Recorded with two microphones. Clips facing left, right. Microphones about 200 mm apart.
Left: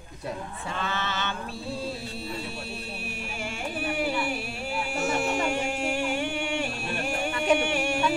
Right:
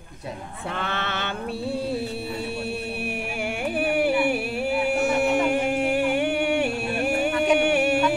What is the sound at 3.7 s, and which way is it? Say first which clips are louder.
Music: right 7 dB; 60° right (ahead or behind).